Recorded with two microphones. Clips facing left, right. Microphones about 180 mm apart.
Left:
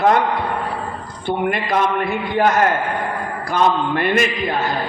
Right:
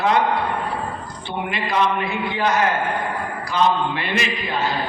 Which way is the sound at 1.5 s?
50° left (ahead or behind).